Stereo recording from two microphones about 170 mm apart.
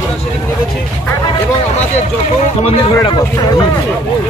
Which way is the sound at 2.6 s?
30° left (ahead or behind).